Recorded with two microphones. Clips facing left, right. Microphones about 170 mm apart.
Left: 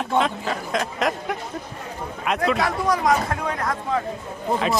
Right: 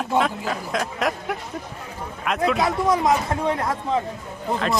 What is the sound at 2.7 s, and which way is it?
Speech, 25° right (ahead or behind).